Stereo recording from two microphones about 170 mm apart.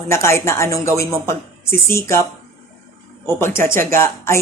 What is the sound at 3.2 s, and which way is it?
Speech, 15° left (ahead or behind).